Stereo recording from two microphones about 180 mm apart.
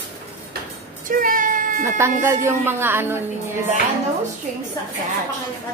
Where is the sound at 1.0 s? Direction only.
50° right (ahead or behind).